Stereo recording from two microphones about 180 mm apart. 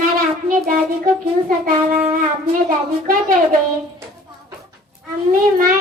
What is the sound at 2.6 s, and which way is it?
Child singing, 50° right (ahead or behind).